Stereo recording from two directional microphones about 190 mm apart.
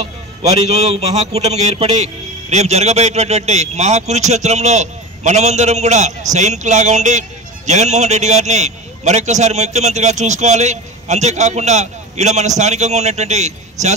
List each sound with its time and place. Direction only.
0.4 s a man's voice: 35° right (ahead or behind)